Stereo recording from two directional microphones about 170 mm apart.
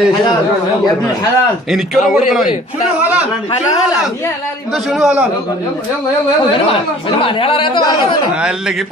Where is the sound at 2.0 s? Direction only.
Centre (ahead or behind).